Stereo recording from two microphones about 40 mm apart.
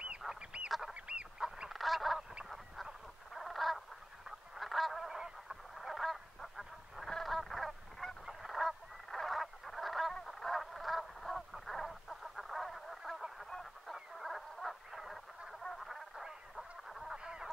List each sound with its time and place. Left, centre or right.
0.4 s goose: right
0.7 s goose: centre
0.9 s goose: right
1.7 s goose: centre
3.3 s frog: centre
4.6 s goose: centre
5.8 s fowl: centre
7.2 s goose: centre
10.2 s fowl: centre
14.1 s frog: centre
16.5 s goose: centre
17.1 s goose: centre